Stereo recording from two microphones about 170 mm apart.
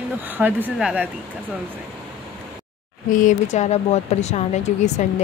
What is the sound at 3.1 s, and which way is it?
Speech, 45° left (ahead or behind).